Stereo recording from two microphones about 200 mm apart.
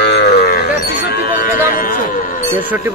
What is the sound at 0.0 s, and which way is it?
Livestock, 55° left (ahead or behind).